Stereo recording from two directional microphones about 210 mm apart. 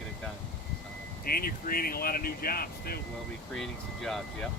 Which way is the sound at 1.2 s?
45° left (ahead or behind).